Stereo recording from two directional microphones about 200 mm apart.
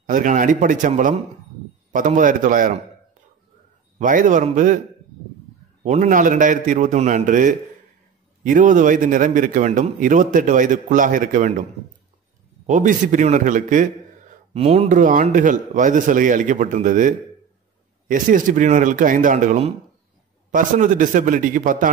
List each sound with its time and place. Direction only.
0.0 s a man's voice: 40° right (ahead or behind)
4.0 s a man's voice: 40° right (ahead or behind)
5.9 s a man's voice: 40° right (ahead or behind)
12.6 s a man's voice: 40° right (ahead or behind)